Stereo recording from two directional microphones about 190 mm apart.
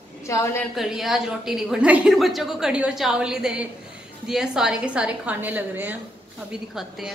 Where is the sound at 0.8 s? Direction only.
Centre (ahead or behind).